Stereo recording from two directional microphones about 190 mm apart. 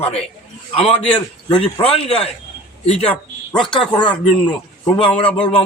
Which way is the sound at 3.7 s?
25° left (ahead or behind).